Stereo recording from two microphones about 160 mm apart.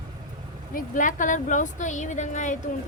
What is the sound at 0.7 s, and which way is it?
Speech, 55° left (ahead or behind).